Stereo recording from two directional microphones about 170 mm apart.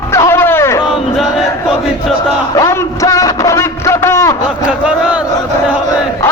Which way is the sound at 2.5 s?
20° left (ahead or behind).